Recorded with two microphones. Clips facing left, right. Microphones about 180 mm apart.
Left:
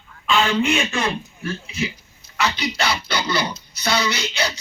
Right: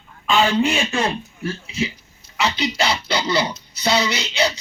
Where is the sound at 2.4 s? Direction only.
25° right (ahead or behind).